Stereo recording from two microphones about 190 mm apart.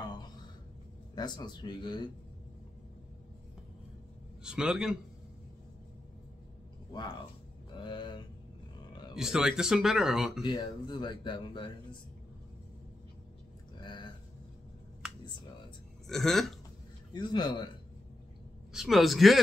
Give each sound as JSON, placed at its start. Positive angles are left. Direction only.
{"t": 1.1, "sound": "speech", "side_deg": 25}
{"t": 4.4, "sound": "speech", "side_deg": -5}
{"t": 7.7, "sound": "a sound", "side_deg": 25}
{"t": 9.1, "sound": "speech", "side_deg": -5}
{"t": 10.4, "sound": "speech", "side_deg": 20}
{"t": 13.7, "sound": "a sound", "side_deg": 25}
{"t": 16.1, "sound": "speech", "side_deg": 0}
{"t": 17.1, "sound": "speech", "side_deg": 25}
{"t": 18.7, "sound": "speech", "side_deg": 0}